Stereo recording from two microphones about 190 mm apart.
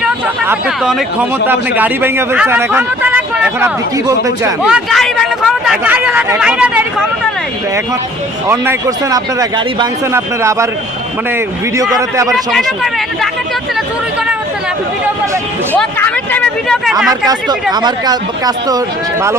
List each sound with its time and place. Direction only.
0.0 s speech: 5° right (ahead or behind); by 4.5 s 20° right (ahead or behind)
4.6 s speech: centre (ahead or behind)
8.4 s speech: 15° right (ahead or behind)
11.9 s speech: 15° right (ahead or behind)
12.3 s speech: centre (ahead or behind)
15.7 s speech: 10° left (ahead or behind)
17.1 s speech: 20° right (ahead or behind)